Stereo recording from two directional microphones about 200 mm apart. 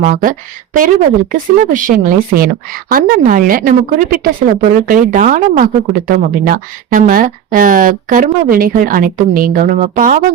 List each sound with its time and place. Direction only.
0.0 s a woman's voice: 45° right (ahead or behind)